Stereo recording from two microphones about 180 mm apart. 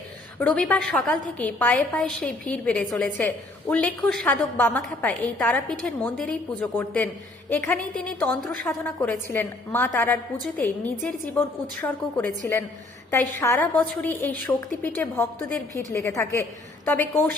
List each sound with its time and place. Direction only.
0.3 s a woman's voice: 5° left (ahead or behind)
8.7 s a woman's voice: 15° left (ahead or behind)